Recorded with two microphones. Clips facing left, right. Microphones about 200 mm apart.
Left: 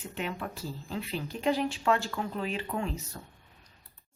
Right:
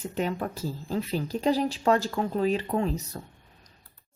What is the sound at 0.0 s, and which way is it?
Speech, 40° right (ahead or behind).